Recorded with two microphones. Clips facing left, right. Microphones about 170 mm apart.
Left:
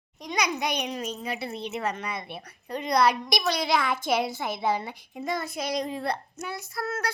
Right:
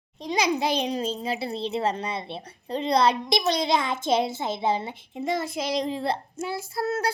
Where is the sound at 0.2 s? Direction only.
25° right (ahead or behind).